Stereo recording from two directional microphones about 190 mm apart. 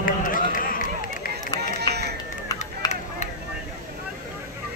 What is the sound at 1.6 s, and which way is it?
Run, 60° right (ahead or behind).